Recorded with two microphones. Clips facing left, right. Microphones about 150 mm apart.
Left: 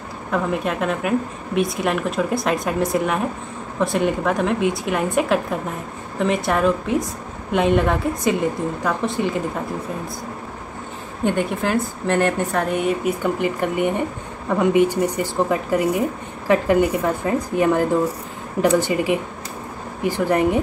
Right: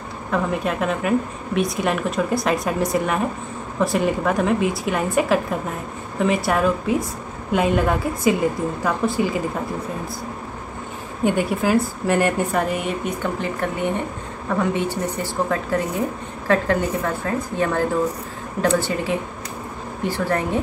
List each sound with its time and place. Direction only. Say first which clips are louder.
0.3 s a woman's voice: even; centre (ahead or behind)
11.2 s a woman's voice: right 1 dB; 5° right (ahead or behind); by 20.6 s 15° left (ahead or behind)